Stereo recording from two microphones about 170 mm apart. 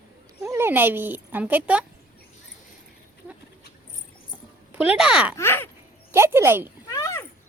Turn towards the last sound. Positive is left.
turn(degrees=15)  # may be behind; listen again after turning